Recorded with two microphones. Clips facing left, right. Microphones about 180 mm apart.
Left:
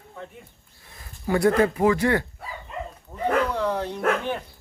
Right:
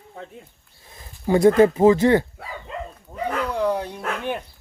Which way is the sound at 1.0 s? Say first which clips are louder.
Right 5 dB; 25° right (ahead or behind).